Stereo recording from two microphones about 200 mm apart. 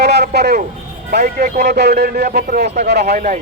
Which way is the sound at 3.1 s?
35° right (ahead or behind).